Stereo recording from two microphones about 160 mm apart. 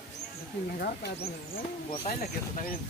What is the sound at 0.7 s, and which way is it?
Speech, 75° left (ahead or behind).